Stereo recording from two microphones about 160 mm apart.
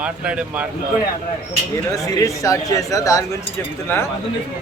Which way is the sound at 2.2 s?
20° left (ahead or behind).